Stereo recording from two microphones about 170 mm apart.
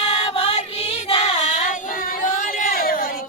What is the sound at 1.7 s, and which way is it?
Child singing, 50° left (ahead or behind).